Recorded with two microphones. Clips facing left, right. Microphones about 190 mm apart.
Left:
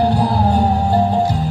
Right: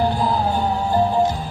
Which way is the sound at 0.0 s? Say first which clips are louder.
Left 4 dB; 75° left (ahead or behind).